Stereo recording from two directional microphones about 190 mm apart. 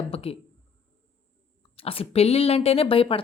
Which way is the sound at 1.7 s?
30° left (ahead or behind).